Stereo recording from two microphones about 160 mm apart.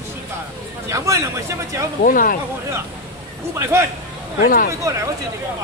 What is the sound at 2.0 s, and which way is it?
Speech, 60° left (ahead or behind).